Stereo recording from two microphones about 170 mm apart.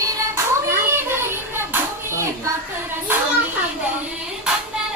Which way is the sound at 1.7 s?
15° right (ahead or behind).